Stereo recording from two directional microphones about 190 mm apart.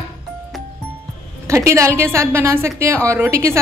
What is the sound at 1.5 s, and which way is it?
Speech, 15° right (ahead or behind).